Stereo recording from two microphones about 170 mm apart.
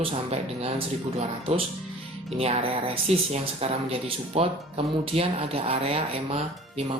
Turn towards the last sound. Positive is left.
turn(degrees=-35)  # may be behind; listen again after turning